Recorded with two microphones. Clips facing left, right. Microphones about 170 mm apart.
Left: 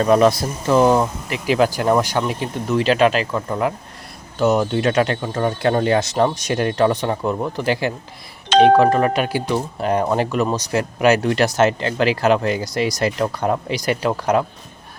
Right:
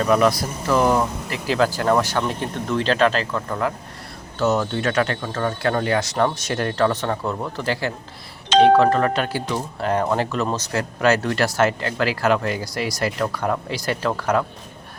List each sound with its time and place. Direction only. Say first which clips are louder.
0.0 s speech: left 3 dB; 30° left (ahead or behind)